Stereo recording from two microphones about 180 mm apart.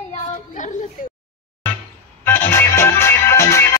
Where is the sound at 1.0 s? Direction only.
50° left (ahead or behind).